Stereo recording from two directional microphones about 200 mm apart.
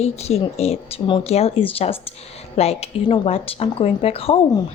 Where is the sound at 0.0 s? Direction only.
30° left (ahead or behind).